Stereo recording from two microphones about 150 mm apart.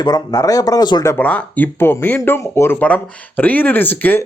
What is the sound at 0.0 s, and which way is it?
A man's voice, 25° left (ahead or behind).